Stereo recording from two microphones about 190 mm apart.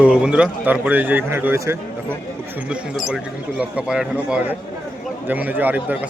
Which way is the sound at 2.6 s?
Centre (ahead or behind).